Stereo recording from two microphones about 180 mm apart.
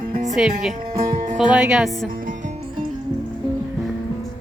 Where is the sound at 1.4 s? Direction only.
5° right (ahead or behind).